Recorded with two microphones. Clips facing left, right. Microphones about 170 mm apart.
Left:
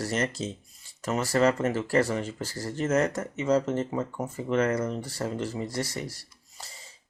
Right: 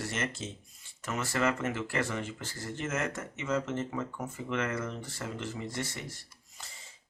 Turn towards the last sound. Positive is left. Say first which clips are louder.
# left 4 dB
turn(degrees=35)  # may be behind; listen again after turning